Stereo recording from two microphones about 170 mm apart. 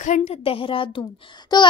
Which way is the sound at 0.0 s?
45° left (ahead or behind).